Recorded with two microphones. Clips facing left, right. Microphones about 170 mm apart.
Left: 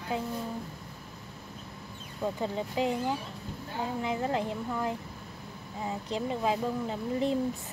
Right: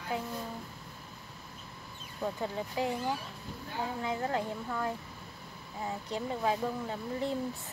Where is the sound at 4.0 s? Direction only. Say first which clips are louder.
Left 3 dB; 20° left (ahead or behind).